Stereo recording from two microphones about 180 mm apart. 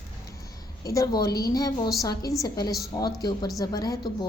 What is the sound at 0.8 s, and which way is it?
A woman's voice, 20° left (ahead or behind).